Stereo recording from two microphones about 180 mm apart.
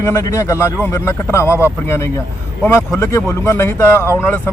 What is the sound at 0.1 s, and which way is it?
Speech, 15° left (ahead or behind).